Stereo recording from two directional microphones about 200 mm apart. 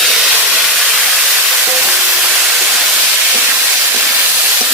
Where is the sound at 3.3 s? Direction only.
5° right (ahead or behind).